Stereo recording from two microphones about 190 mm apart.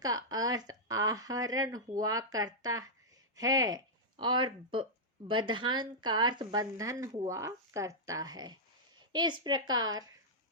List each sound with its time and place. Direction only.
0.0 s a woman's voice: 20° right (ahead or behind)